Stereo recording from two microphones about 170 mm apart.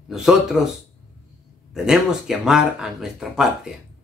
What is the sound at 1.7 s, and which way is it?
Speech, 5° right (ahead or behind).